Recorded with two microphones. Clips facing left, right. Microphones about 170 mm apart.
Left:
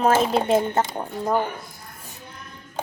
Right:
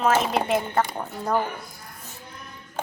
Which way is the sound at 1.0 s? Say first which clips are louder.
Left 2 dB; 10° left (ahead or behind).